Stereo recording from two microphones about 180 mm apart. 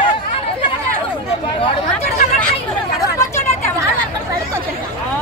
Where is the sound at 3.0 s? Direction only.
15° left (ahead or behind).